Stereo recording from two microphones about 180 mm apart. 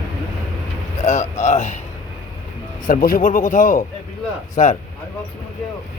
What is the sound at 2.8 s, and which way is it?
Speech, 50° left (ahead or behind).